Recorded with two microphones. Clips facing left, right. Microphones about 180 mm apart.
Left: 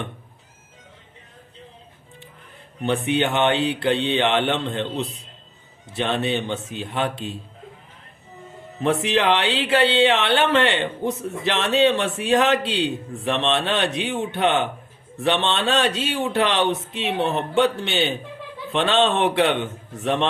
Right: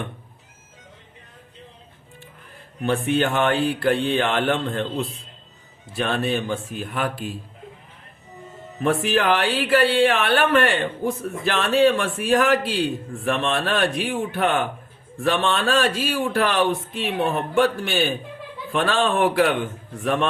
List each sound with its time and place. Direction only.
2.8 s speech: 20° left (ahead or behind)
8.8 s speech: 20° left (ahead or behind)